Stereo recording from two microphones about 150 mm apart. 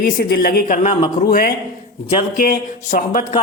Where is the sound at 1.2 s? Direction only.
75° left (ahead or behind).